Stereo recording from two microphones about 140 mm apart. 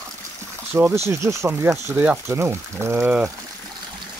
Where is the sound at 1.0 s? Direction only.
20° right (ahead or behind).